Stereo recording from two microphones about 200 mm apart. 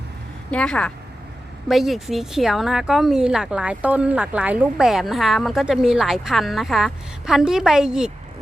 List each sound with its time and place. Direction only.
0.5 s a woman's voice: 5° left (ahead or behind)